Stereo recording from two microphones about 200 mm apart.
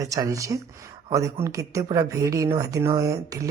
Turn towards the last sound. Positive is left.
turn(degrees=-15)  # may be behind; listen again after turning